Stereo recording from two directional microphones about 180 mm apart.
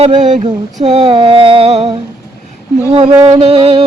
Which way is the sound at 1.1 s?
30° right (ahead or behind).